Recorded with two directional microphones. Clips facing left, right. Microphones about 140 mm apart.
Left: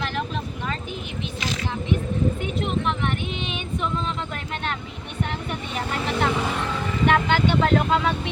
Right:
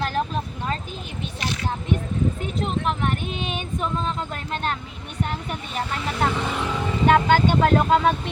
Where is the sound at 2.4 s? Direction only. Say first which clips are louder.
Even; 40° right (ahead or behind).